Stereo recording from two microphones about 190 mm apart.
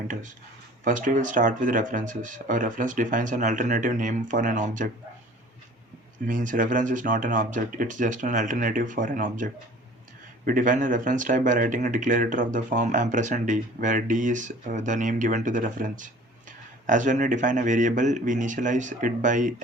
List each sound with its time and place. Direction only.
0.9 s speech: 45° right (ahead or behind)
6.2 s speech: 45° right (ahead or behind)